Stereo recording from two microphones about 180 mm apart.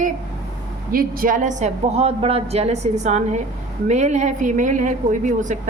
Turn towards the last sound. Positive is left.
turn(degrees=-45)  # may be behind; listen again after turning